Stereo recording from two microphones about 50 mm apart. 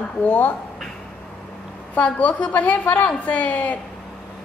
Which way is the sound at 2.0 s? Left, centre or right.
Left.